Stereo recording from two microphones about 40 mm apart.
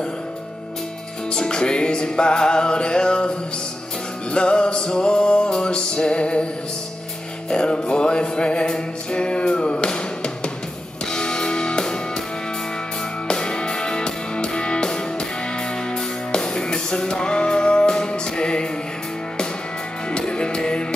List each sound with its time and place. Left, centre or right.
1.3 s music: centre
7.4 s music: left
13.3 s music: centre
20.1 s music: left